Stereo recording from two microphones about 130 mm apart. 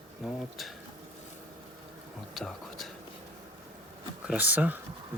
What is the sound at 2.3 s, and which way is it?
Whispering, centre (ahead or behind).